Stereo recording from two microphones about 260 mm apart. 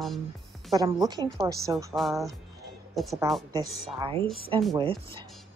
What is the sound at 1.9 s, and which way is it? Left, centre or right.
A woman's voice, centre.